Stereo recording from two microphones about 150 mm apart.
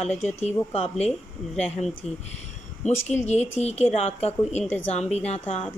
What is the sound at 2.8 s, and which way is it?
Speech, 50° left (ahead or behind).